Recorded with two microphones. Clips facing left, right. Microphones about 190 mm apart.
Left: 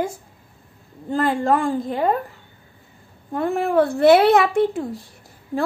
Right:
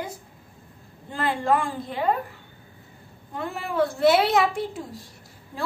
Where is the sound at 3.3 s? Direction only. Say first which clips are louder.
Left 10 dB; 55° left (ahead or behind).